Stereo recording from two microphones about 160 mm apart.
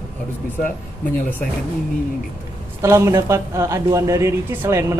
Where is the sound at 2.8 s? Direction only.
20° right (ahead or behind).